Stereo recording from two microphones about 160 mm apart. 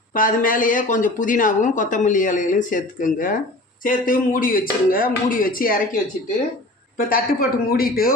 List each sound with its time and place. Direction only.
0.1 s speech: 60° left (ahead or behind)